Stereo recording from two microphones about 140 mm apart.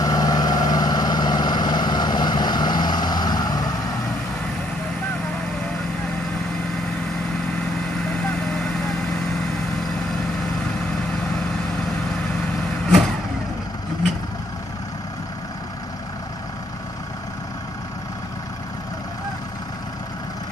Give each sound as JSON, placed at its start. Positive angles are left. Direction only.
{"t": 0.0, "sound": "vehicle", "side_deg": 25}
{"t": 8.3, "sound": "vehicle", "side_deg": 5}